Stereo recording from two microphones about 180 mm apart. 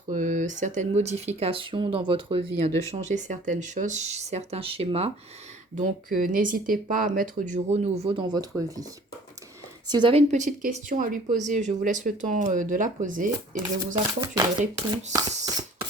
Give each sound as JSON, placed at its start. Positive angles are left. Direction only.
{"t": 0.1, "sound": "speech", "side_deg": -45}
{"t": 5.7, "sound": "speech", "side_deg": -50}
{"t": 10.3, "sound": "speech", "side_deg": -45}
{"t": 13.7, "sound": "speech", "side_deg": -20}